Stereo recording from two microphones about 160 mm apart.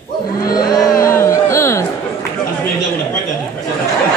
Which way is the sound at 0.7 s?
20° left (ahead or behind).